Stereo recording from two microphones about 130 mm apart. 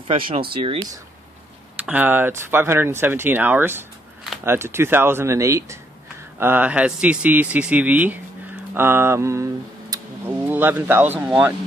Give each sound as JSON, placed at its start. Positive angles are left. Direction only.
{"t": 0.1, "sound": "speech", "side_deg": -40}
{"t": 1.8, "sound": "speech", "side_deg": -10}